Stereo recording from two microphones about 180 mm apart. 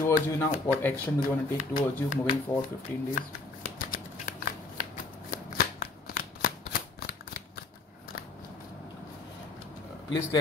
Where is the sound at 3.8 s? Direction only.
50° left (ahead or behind).